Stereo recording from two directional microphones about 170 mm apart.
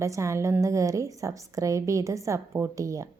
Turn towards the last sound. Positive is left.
turn(degrees=-20)  # may be behind; listen again after turning